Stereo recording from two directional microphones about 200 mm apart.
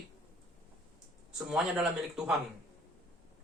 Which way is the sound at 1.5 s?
5° right (ahead or behind).